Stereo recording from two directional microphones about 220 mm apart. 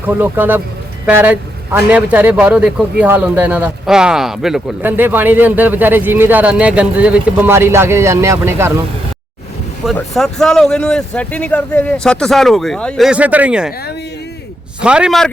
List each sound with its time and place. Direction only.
0.0 s a man's voice: 10° right (ahead or behind)
9.8 s speech: centre (ahead or behind)
14.8 s speech: 5° right (ahead or behind)